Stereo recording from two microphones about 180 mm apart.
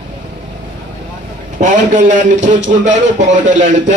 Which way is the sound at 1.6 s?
45° right (ahead or behind).